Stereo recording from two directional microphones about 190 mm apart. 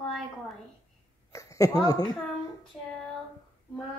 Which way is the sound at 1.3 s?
15° left (ahead or behind).